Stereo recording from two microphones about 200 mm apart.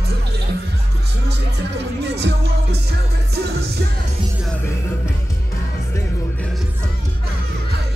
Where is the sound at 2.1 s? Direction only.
55° right (ahead or behind).